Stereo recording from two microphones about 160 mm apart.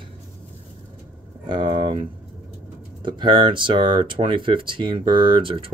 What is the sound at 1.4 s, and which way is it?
Speech, 30° right (ahead or behind).